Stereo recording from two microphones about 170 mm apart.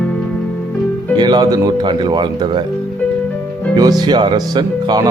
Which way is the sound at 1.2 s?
25° right (ahead or behind).